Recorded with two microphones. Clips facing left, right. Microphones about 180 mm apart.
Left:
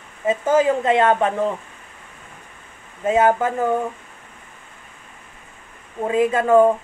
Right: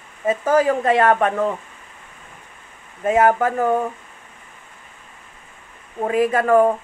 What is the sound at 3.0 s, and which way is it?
Speech, 25° left (ahead or behind).